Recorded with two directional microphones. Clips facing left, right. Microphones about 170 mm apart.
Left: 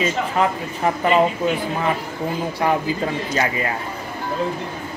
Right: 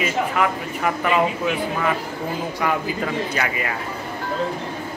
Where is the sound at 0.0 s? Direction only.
30° left (ahead or behind).